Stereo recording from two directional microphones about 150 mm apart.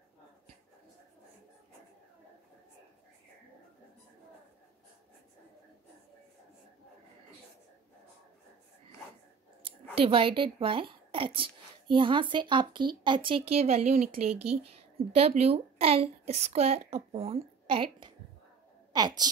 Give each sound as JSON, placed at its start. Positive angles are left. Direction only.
{"t": 9.9, "sound": "a woman's voice", "side_deg": -40}
{"t": 15.1, "sound": "a woman's voice", "side_deg": -40}
{"t": 18.9, "sound": "a woman's voice", "side_deg": -30}